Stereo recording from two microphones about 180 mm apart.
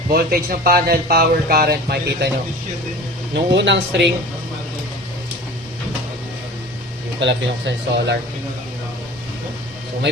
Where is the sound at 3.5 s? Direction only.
80° right.